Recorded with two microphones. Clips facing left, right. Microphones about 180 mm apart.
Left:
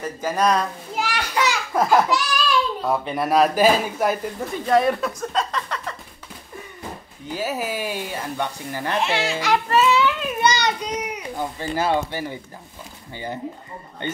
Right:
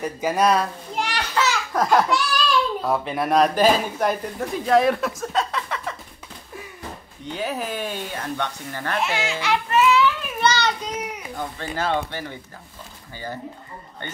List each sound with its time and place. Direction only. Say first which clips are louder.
0.0 s a man's voice: right 1 dB; 10° right (ahead or behind)
0.9 s a child's voice: even; 5° left (ahead or behind)
7.2 s speech: left 1 dB; 5° left (ahead or behind)
9.4 s a sound: even; 35° left (ahead or behind); by 10.7 s 15° left (ahead or behind)
11.3 s speech: left 4 dB; 10° left (ahead or behind)
14.0 s a man's voice: left 8 dB; 20° left (ahead or behind)